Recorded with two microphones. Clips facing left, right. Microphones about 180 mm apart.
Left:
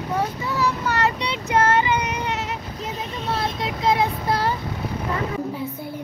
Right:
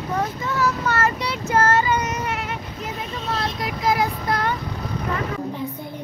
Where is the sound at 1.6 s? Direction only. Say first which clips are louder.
Even; 10° left (ahead or behind).